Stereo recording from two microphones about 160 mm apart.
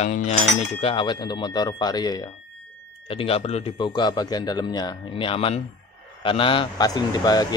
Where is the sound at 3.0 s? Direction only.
35° left (ahead or behind).